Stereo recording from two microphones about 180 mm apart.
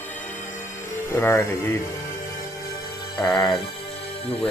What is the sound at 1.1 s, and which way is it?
Speech, 15° left (ahead or behind).